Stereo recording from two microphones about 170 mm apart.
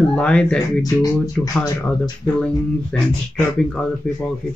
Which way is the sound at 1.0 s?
20° left (ahead or behind).